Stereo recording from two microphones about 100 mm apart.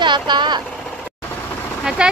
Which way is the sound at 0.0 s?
50° right (ahead or behind).